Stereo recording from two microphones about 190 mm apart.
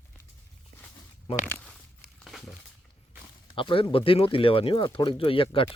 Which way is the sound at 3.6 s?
25° left (ahead or behind).